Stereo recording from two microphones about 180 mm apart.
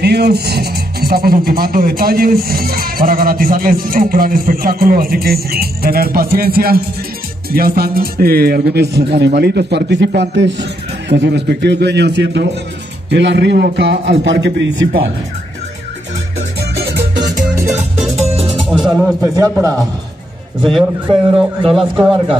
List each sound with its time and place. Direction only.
0.0 s a man's voice: 65° right (ahead or behind); by 14.7 s 90° right
18.7 s music: centre (ahead or behind)
19.2 s a man's voice: 20° right (ahead or behind)
20.7 s speech: 5° right (ahead or behind)